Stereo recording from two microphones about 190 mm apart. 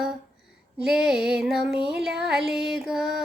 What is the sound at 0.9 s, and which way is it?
Female singing, 5° right (ahead or behind).